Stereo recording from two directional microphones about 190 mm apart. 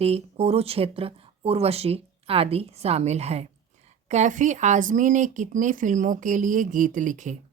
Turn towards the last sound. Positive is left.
turn(degrees=-40)  # may be behind; listen again after turning